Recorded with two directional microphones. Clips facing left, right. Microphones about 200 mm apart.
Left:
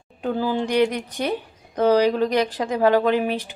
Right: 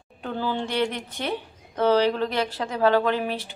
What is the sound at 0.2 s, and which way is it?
Speech, 10° left (ahead or behind).